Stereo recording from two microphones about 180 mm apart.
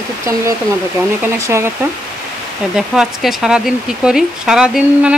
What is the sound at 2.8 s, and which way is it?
Speech, 5° right (ahead or behind).